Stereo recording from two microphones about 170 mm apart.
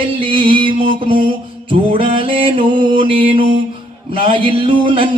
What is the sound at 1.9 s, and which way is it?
Music, 30° right (ahead or behind).